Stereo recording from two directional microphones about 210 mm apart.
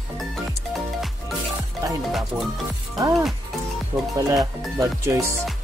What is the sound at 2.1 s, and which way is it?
Speech, centre (ahead or behind).